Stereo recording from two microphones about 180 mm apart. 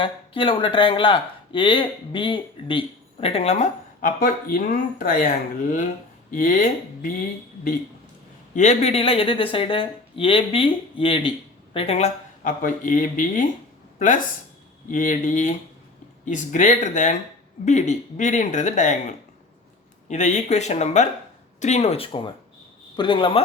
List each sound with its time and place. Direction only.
0.0 s speech: 30° left (ahead or behind); by 7.1 s 45° left (ahead or behind)
8.5 s speech: 40° left (ahead or behind)
14.8 s speech: 45° left (ahead or behind)
20.1 s speech: 40° left (ahead or behind)